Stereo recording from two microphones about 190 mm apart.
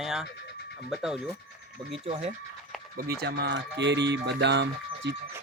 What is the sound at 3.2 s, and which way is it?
Speech, 60° right (ahead or behind).